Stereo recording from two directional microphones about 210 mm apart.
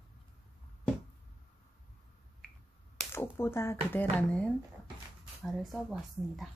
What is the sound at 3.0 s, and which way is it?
A woman's voice, 10° left (ahead or behind).